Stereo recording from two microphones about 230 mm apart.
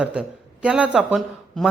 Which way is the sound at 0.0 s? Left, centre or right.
Centre.